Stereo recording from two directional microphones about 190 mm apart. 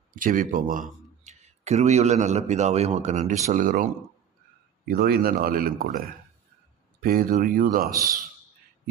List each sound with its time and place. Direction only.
0.1 s a man's voice: 45° right (ahead or behind)
4.9 s speech: 55° right (ahead or behind)
7.0 s speech: 50° right (ahead or behind)